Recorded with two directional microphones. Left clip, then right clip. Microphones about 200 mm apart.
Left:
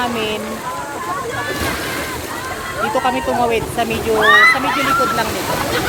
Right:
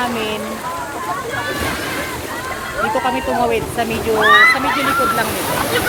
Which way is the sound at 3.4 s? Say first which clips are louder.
Left 1 dB; 20° left (ahead or behind).